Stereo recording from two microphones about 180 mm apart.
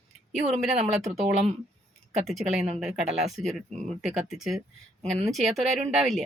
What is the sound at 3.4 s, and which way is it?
Speech, centre (ahead or behind).